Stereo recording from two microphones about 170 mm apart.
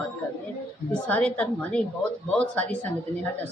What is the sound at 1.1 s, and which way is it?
Speech, 10° left (ahead or behind).